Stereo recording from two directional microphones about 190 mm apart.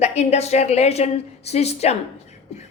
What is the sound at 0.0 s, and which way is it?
A woman's voice, 35° left (ahead or behind).